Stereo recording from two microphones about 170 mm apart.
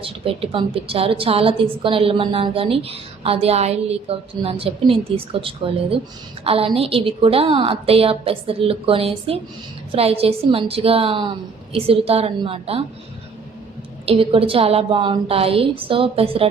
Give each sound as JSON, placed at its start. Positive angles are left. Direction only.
{"t": 0.0, "sound": "a woman's voice", "side_deg": -35}
{"t": 14.0, "sound": "a woman's voice", "side_deg": -35}